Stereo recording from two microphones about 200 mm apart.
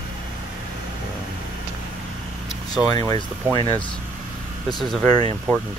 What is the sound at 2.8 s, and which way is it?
Speech, 30° right (ahead or behind).